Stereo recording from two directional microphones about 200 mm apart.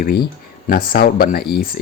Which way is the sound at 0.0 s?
50° left (ahead or behind).